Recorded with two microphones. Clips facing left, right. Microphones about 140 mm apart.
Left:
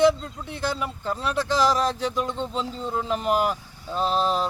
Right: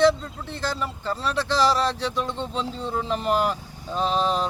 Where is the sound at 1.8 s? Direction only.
45° left (ahead or behind).